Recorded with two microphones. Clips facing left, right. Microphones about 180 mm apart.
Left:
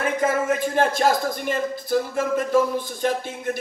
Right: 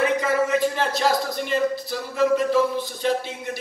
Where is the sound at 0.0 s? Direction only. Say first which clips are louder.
Right 1 dB; 50° left (ahead or behind).